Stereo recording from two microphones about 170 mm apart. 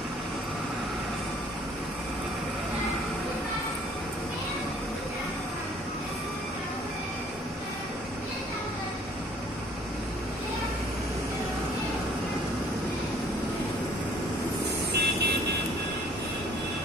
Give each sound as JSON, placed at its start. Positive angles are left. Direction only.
{"t": 14.9, "sound": "vehicle", "side_deg": -75}